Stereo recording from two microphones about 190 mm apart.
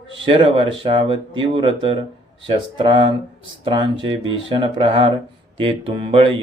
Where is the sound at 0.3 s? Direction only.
30° right (ahead or behind).